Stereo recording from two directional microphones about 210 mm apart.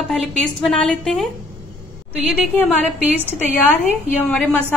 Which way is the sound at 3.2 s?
10° left (ahead or behind).